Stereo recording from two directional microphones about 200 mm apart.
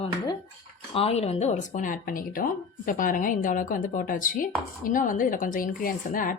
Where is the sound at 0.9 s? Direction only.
30° left (ahead or behind).